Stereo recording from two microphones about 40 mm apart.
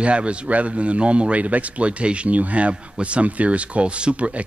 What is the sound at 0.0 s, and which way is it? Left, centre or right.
Speech, right.